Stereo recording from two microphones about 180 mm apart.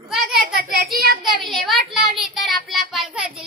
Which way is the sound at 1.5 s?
Centre (ahead or behind).